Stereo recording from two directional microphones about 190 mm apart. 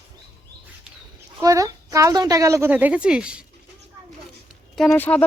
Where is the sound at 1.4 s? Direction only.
20° right (ahead or behind).